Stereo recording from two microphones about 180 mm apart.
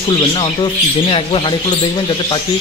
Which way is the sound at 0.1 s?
30° left (ahead or behind).